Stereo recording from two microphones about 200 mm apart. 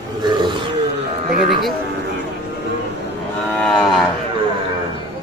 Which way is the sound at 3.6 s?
Centre (ahead or behind).